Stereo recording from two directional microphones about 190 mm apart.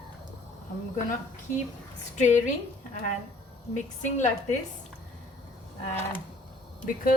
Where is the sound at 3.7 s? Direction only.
40° left (ahead or behind).